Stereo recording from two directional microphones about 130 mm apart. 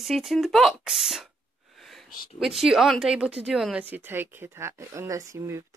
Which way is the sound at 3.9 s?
15° right (ahead or behind).